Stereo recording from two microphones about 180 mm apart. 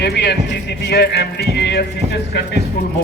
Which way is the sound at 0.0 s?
70° left (ahead or behind).